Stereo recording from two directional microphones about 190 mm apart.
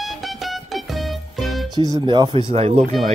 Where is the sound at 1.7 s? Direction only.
20° right (ahead or behind).